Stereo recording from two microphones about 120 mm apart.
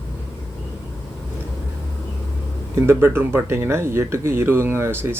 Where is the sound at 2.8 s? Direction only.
20° right (ahead or behind).